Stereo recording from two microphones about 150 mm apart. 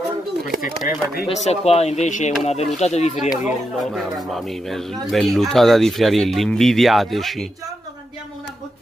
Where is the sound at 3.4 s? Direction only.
Centre (ahead or behind).